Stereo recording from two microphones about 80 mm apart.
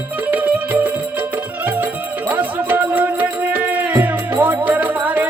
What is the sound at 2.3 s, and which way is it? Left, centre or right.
Music, right.